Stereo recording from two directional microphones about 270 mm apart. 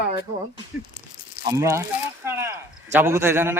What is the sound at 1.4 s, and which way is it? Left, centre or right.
Speech, centre.